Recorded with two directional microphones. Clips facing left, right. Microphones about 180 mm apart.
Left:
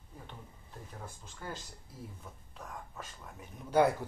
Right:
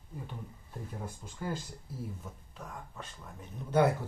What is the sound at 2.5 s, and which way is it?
Speech, 5° left (ahead or behind).